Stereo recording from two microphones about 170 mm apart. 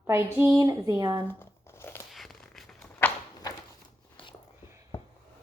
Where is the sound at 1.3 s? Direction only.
15° left (ahead or behind).